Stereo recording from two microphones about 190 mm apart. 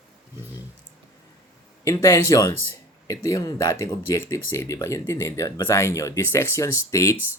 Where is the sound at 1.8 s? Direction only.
15° left (ahead or behind).